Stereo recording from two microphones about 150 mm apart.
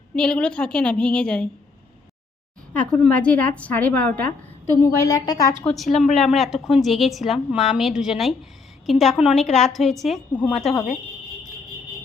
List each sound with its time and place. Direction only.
0.2 s a woman's voice: 5° left (ahead or behind)
2.7 s a woman's voice: 5° left (ahead or behind)
4.3 s a woman's voice: 20° left (ahead or behind)
5.6 s a woman's voice: centre (ahead or behind)